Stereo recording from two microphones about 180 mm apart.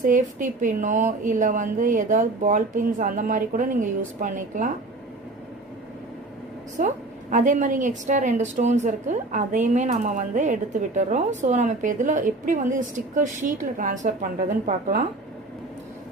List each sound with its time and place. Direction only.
0.0 s a woman's voice: 45° right (ahead or behind)
6.7 s a woman's voice: 45° right (ahead or behind)